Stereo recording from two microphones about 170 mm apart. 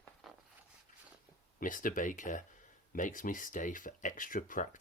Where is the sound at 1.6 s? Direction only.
50° left (ahead or behind).